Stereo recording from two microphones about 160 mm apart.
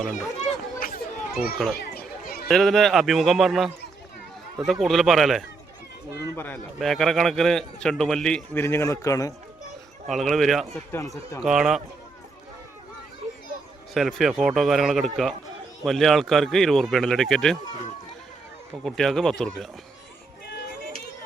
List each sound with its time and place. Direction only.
0.1 s speech: 45° left (ahead or behind)
0.8 s children playing: 65° left (ahead or behind)
1.7 s a sound: 75° left (ahead or behind)
2.5 s a man's voice: centre (ahead or behind)
6.3 s speech: 10° left (ahead or behind)
6.7 s a man's voice: centre (ahead or behind)
8.6 s speech: 15° left (ahead or behind)
10.1 s a man's voice: centre (ahead or behind)
13.9 s a man's voice: centre (ahead or behind)
18.9 s a man's voice: centre (ahead or behind)